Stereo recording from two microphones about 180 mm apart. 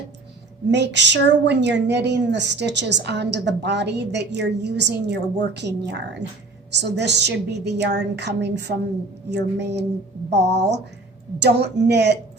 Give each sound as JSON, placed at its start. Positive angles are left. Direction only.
{"t": 0.7, "sound": "a woman's voice", "side_deg": -75}